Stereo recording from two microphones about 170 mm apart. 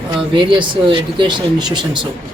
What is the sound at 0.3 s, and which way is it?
Speech, 30° right (ahead or behind).